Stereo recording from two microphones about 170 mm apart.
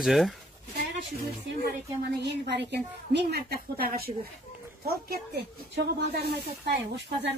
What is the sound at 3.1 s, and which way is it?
Speech, 70° right (ahead or behind).